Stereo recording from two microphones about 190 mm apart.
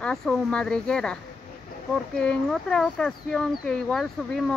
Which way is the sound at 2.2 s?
5° left (ahead or behind).